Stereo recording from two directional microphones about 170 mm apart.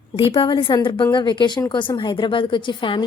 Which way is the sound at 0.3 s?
30° left (ahead or behind).